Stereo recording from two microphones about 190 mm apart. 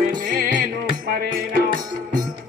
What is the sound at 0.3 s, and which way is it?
Music, 45° right (ahead or behind).